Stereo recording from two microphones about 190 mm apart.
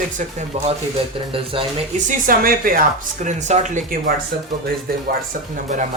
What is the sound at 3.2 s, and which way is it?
A woman's voice, 40° right (ahead or behind).